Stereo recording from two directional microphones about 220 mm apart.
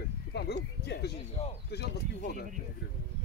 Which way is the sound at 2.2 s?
45° left (ahead or behind).